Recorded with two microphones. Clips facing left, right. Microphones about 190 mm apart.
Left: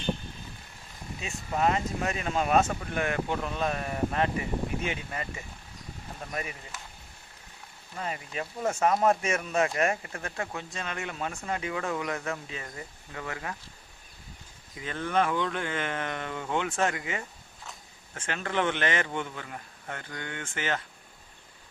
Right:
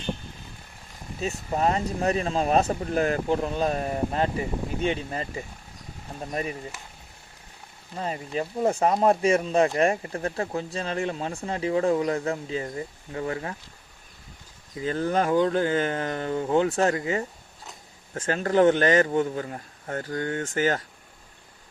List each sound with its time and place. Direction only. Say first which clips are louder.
1.2 s speech: right 3 dB; 35° right (ahead or behind)
7.9 s speech: right 6 dB; 30° right (ahead or behind)
14.8 s speech: right 4 dB; 35° right (ahead or behind)